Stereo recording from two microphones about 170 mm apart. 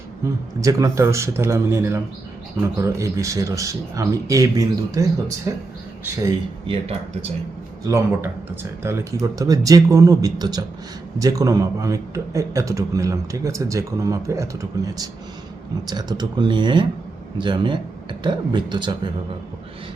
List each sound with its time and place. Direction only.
0.6 s speech: 20° right (ahead or behind)
7.9 s a man's voice: 15° right (ahead or behind)